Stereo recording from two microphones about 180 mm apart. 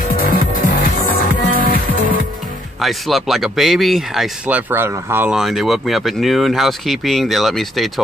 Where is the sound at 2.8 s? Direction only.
Centre (ahead or behind).